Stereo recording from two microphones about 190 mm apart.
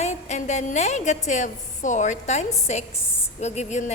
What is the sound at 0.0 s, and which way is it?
A woman's voice, 35° left (ahead or behind).